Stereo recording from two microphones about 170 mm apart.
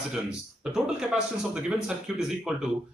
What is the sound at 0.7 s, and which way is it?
A man's voice, 5° right (ahead or behind).